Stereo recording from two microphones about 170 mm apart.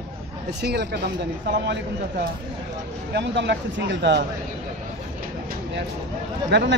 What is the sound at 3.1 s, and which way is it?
Speech, 85° right.